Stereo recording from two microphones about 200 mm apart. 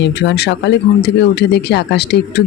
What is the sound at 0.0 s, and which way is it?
Speech, 60° left (ahead or behind).